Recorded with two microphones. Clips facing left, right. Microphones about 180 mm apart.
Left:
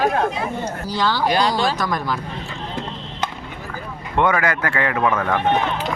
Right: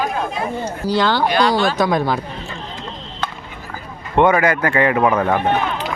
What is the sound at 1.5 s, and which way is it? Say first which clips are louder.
Speech: right 5 dB; 60° right (ahead or behind).